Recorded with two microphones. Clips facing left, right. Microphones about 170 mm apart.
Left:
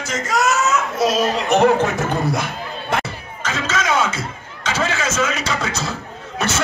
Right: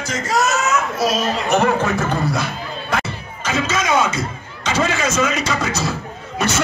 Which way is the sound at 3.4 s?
10° right (ahead or behind).